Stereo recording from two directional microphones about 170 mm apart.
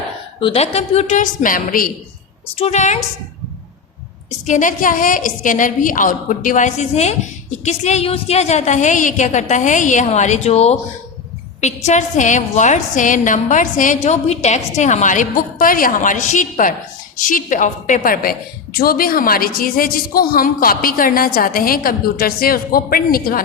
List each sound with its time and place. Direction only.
0.3 s a woman's voice: 35° left (ahead or behind); by 1.9 s 55° left (ahead or behind)
2.6 s a woman's voice: 40° left (ahead or behind)
4.4 s a woman's voice: 50° left (ahead or behind)